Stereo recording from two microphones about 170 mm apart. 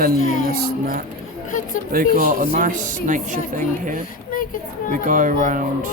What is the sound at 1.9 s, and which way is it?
Speech, 55° right (ahead or behind).